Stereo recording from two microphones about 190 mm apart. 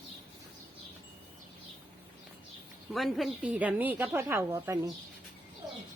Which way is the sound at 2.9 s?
Centre (ahead or behind).